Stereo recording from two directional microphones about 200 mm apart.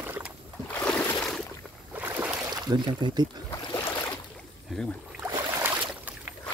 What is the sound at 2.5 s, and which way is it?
Speech, 20° right (ahead or behind).